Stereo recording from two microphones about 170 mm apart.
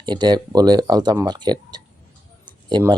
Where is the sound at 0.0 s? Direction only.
25° right (ahead or behind).